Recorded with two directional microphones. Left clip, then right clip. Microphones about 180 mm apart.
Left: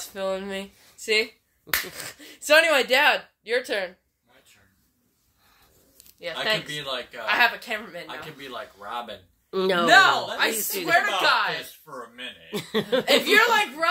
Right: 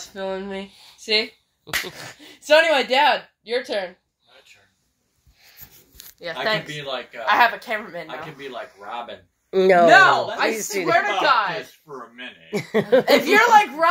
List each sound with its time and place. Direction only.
0.0 s speech: 15° left (ahead or behind)
0.7 s speech: centre (ahead or behind)
6.4 s speech: 10° right (ahead or behind)
6.7 s speech: 20° left (ahead or behind)
7.2 s speech: 10° right (ahead or behind)
8.2 s speech: 20° left (ahead or behind)
9.5 s a woman's voice: centre (ahead or behind)
11.0 s speech: 20° left (ahead or behind)
12.6 s speech: 5° right (ahead or behind)